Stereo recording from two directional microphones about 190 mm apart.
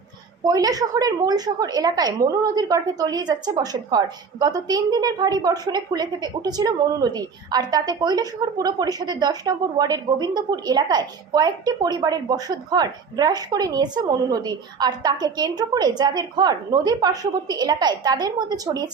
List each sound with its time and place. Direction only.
0.4 s a woman's voice: 20° right (ahead or behind)